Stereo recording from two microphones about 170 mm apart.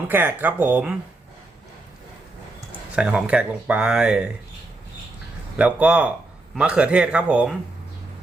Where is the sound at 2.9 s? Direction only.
5° right (ahead or behind).